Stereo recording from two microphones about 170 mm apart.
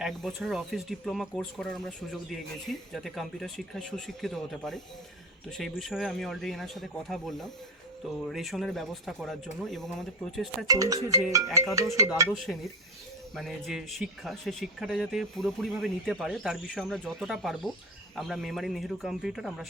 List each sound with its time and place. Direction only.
0.0 s speech: centre (ahead or behind)
10.7 s music: 20° right (ahead or behind)
12.3 s speech: centre (ahead or behind)